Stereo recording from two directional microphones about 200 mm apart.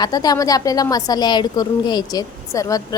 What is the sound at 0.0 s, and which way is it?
A woman's voice, 20° left (ahead or behind).